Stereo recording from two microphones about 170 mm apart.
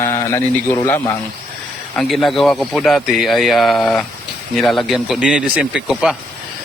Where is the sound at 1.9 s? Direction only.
Centre (ahead or behind).